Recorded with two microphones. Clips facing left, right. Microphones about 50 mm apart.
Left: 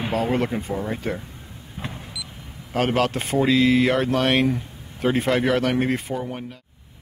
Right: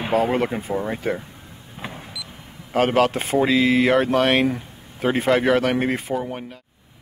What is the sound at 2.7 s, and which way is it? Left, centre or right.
Speech, centre.